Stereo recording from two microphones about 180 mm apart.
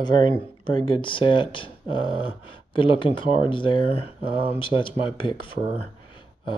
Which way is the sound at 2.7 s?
30° left (ahead or behind).